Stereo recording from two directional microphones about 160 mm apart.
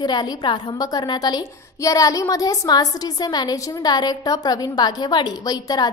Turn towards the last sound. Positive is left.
turn(degrees=25)  # may be behind; listen again after turning